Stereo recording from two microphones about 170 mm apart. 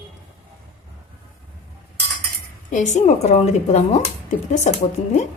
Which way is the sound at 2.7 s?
45° left (ahead or behind).